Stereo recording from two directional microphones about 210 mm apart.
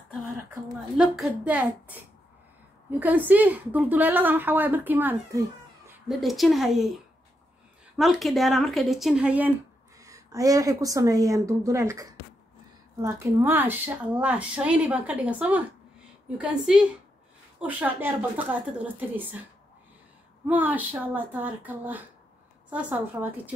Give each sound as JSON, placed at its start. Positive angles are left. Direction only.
{"t": 0.9, "sound": "a woman's voice", "side_deg": 0}
{"t": 6.0, "sound": "speech", "side_deg": 0}
{"t": 9.9, "sound": "a woman's voice", "side_deg": -15}
{"t": 20.4, "sound": "a woman's voice", "side_deg": -10}